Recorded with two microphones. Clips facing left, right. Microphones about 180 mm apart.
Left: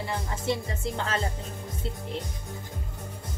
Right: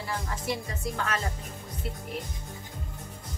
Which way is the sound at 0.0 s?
25° left (ahead or behind).